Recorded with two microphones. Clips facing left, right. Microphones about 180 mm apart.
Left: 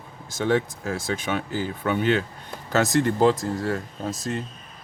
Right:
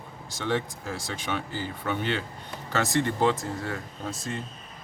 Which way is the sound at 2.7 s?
40° left (ahead or behind).